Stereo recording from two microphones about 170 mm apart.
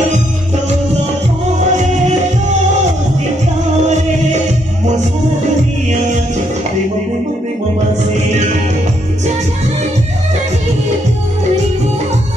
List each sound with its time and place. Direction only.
1.7 s music: 45° right (ahead or behind)